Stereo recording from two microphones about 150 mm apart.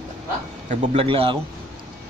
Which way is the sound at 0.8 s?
40° right (ahead or behind).